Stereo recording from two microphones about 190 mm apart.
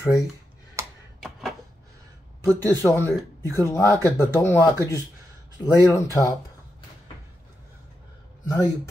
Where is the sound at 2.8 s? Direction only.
10° left (ahead or behind).